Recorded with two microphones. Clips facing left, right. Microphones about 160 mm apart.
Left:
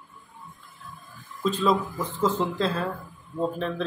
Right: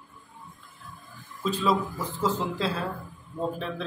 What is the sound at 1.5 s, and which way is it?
Speech, 5° right (ahead or behind).